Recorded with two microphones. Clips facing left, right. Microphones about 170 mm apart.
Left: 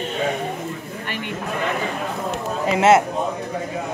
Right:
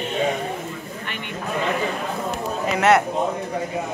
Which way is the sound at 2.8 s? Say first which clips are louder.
Left 2 dB; 25° left (ahead or behind).